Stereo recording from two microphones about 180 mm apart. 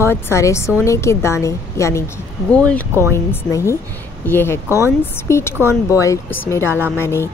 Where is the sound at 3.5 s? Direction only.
15° left (ahead or behind).